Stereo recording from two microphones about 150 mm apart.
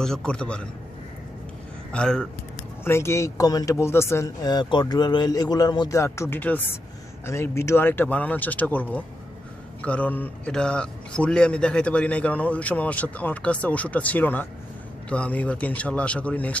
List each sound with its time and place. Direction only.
0.0 s a man's voice: 5° left (ahead or behind)
1.9 s a man's voice: 5° left (ahead or behind)
2.8 s a man's voice: 15° left (ahead or behind)